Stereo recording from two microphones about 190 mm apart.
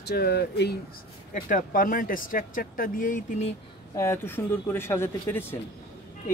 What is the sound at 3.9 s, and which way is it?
Speech, 15° left (ahead or behind).